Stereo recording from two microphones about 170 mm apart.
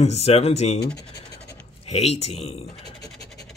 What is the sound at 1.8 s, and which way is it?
Speech, 40° left (ahead or behind).